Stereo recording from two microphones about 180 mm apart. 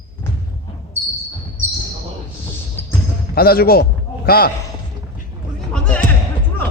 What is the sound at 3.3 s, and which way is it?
Speech, 55° left (ahead or behind).